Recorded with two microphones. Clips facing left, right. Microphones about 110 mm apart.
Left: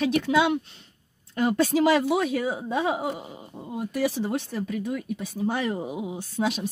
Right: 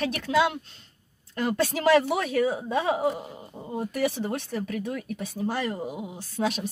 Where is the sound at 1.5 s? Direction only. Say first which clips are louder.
Even; 5° left (ahead or behind).